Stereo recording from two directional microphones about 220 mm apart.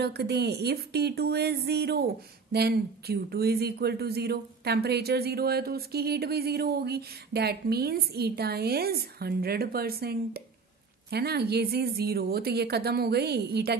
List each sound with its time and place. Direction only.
0.0 s speech: 50° right (ahead or behind)